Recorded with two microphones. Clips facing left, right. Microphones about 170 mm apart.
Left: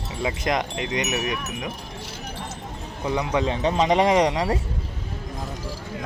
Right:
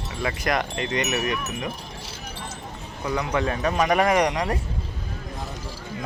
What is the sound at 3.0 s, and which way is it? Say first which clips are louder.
Speech: left 1 dB; 20° left (ahead or behind).